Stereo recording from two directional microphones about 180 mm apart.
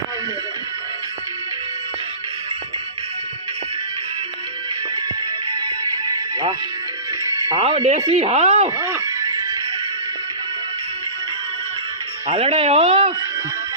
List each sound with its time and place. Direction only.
5.5 s music: 25° right (ahead or behind)
7.4 s speech: 30° right (ahead or behind)
8.7 s music: 20° right (ahead or behind)
12.3 s speech: 35° right (ahead or behind)